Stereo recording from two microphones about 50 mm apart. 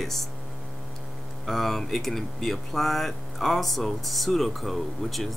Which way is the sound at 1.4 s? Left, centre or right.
Centre.